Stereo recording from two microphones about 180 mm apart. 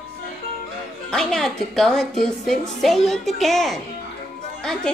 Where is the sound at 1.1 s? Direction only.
Centre (ahead or behind).